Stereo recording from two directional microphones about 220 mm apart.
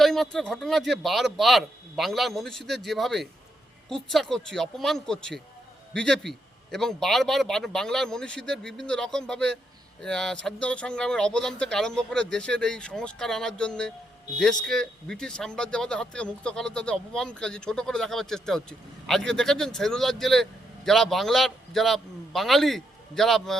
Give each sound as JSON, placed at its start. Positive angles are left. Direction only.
{"t": 0.0, "sound": "speech", "side_deg": 0}